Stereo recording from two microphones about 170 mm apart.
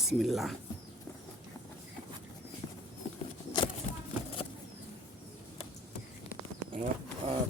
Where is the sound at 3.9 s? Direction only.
50° left (ahead or behind).